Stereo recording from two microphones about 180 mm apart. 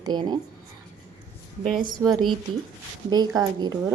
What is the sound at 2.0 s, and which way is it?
Speech, 5° right (ahead or behind).